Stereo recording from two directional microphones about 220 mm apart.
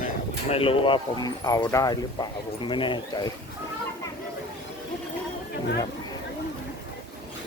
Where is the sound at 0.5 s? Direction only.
25° left (ahead or behind).